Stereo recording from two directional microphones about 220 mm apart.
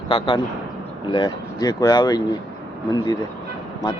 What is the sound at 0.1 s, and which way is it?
Speech, 20° left (ahead or behind).